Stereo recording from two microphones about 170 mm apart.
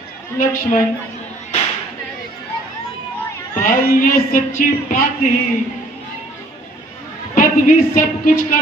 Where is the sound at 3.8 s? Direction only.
55° left (ahead or behind).